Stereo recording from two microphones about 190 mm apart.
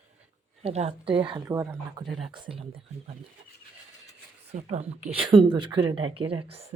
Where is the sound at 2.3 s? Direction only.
30° right (ahead or behind).